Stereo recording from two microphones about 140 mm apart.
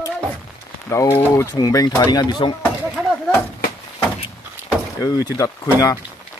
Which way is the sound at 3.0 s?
5° right (ahead or behind).